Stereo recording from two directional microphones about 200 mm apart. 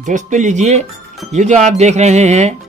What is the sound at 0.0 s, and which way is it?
Speech, 40° right (ahead or behind).